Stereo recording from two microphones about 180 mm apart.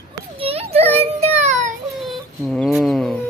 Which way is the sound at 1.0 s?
35° right (ahead or behind).